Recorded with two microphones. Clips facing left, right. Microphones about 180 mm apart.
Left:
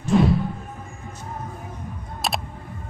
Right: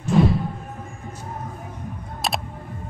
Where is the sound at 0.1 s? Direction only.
Centre (ahead or behind).